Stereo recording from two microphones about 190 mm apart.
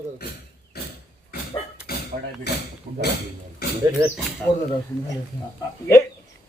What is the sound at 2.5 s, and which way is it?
Speech, 60° left (ahead or behind).